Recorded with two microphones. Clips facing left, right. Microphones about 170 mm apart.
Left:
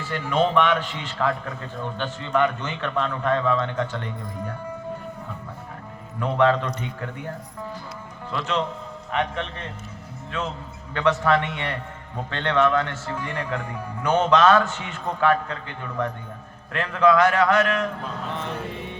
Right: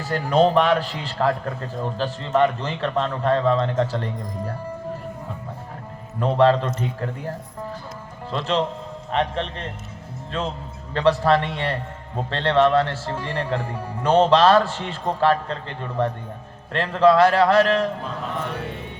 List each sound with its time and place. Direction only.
0.0 s a man's voice: 40° right (ahead or behind)
6.1 s a man's voice: 30° right (ahead or behind)
10.9 s a man's voice: 35° right (ahead or behind)